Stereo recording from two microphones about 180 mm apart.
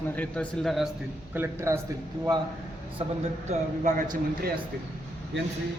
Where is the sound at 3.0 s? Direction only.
35° right (ahead or behind).